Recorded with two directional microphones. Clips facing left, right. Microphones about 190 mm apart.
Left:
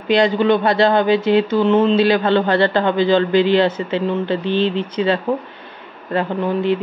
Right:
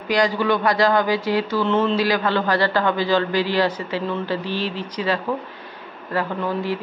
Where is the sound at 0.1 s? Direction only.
25° left (ahead or behind).